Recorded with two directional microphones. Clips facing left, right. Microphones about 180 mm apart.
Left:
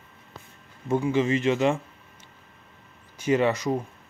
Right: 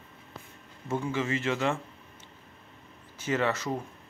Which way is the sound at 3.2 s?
15° left (ahead or behind).